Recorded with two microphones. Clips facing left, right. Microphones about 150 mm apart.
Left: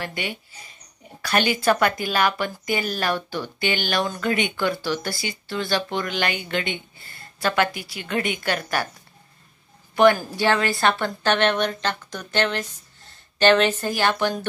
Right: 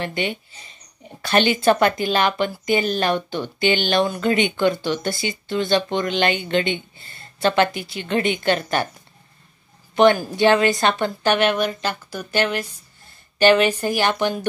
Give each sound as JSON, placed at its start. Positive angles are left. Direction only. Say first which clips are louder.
{"t": 0.0, "sound": "speech", "louder": "right 5 dB", "side_deg": -25}
{"t": 9.9, "sound": "speech", "louder": "right 2 dB", "side_deg": -20}
{"t": 11.1, "sound": "speech", "louder": "right 2 dB", "side_deg": -10}